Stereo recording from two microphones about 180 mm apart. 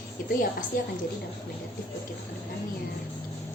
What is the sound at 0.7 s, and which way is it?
Speech, 50° left (ahead or behind).